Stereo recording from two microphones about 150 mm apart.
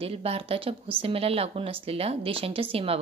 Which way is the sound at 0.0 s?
40° right (ahead or behind).